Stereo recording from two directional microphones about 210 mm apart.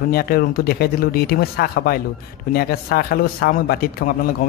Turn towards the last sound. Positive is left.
turn(degrees=45)  # may be behind; listen again after turning